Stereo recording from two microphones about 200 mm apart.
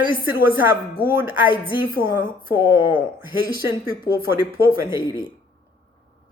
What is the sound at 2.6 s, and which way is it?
Speech, 10° right (ahead or behind).